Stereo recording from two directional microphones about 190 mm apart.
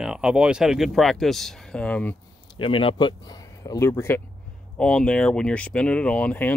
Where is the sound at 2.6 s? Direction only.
30° left (ahead or behind).